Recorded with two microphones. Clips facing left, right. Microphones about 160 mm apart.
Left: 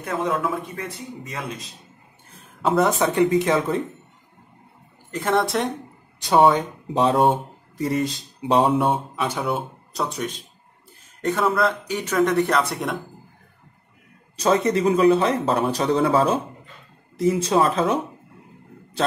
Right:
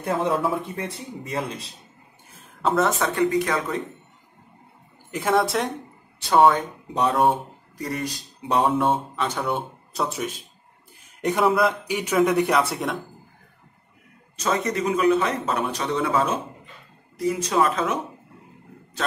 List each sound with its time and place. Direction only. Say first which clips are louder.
0.0 s speech: right 1 dB; 30° right (ahead or behind)
2.8 s speech: left 4 dB; 20° left (ahead or behind)
5.1 s speech: even; 5° right (ahead or behind)
6.2 s speech: left 1 dB; 20° left (ahead or behind)
9.1 s speech: left 1 dB; 5° left (ahead or behind)
11.1 s a man's voice: even; 15° right (ahead or behind)
11.4 s speech: right 2 dB; 5° right (ahead or behind)
14.3 s speech: left 5 dB; 30° left (ahead or behind)